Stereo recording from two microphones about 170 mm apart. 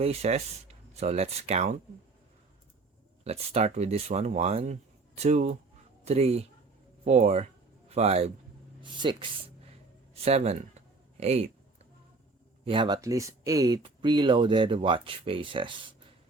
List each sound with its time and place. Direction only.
0.0 s speech: 35° right (ahead or behind)
3.2 s speech: 40° right (ahead or behind)
7.0 s a sound: 40° right (ahead or behind)
8.8 s speech: 30° right (ahead or behind)
10.2 s speech: 40° right (ahead or behind)
12.6 s speech: 30° right (ahead or behind)